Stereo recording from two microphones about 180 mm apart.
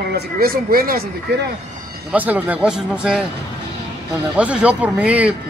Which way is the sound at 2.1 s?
10° right (ahead or behind).